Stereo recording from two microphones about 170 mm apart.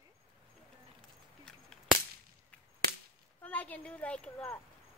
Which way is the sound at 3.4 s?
10° left (ahead or behind).